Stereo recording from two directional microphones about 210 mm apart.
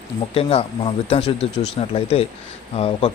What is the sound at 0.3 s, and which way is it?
A man's voice, 25° left (ahead or behind).